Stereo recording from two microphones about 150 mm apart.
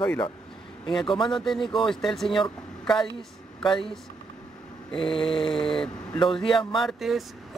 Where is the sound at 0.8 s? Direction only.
35° left (ahead or behind).